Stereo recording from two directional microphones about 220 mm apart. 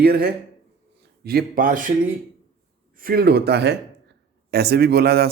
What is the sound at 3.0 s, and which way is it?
Speech, 45° right (ahead or behind).